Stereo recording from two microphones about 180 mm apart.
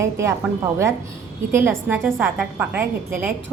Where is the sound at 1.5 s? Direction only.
15° right (ahead or behind).